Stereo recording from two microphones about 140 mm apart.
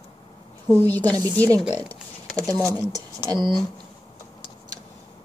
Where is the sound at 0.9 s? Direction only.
10° left (ahead or behind).